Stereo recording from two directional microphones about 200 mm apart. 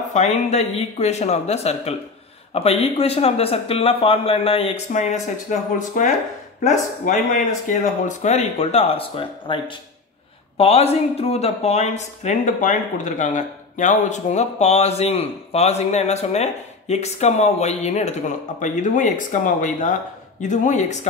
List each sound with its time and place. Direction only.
0.1 s speech: 35° left (ahead or behind)